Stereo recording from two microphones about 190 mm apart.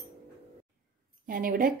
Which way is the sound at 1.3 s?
50° right (ahead or behind).